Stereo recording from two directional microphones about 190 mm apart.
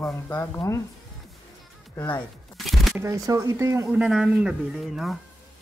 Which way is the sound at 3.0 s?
15° right (ahead or behind).